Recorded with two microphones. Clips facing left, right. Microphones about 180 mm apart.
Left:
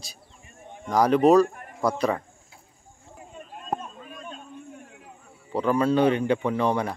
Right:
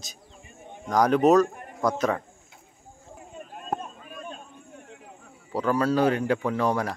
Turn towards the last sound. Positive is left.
turn(degrees=0)  # may be behind; listen again after turning